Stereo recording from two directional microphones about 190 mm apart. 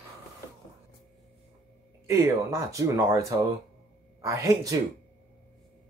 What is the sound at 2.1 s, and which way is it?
Speech, 15° right (ahead or behind).